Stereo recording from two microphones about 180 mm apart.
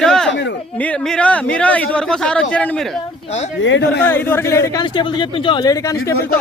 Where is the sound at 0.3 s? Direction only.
80° left.